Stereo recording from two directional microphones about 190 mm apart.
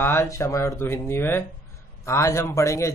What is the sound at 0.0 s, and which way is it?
Speech, 10° left (ahead or behind).